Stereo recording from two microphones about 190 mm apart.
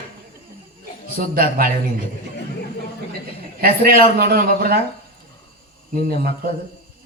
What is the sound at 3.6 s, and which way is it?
Speech, 50° right (ahead or behind).